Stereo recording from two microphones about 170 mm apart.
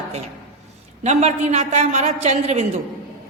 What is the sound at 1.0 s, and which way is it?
A man's voice, 40° right (ahead or behind).